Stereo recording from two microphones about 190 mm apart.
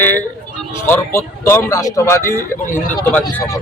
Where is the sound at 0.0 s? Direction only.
10° left (ahead or behind).